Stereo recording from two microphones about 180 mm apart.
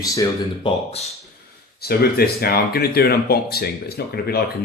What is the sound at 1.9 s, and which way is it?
Speech, 60° left (ahead or behind).